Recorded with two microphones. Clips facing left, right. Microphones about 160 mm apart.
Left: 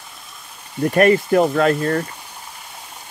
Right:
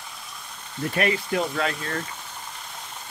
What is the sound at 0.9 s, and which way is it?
Speech, 50° left (ahead or behind).